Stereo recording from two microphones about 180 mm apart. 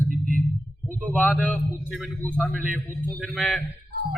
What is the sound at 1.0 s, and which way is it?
A man's voice, 5° left (ahead or behind).